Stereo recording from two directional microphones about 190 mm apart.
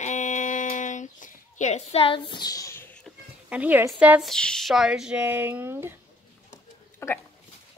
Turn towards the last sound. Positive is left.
turn(degrees=15)  # may be behind; listen again after turning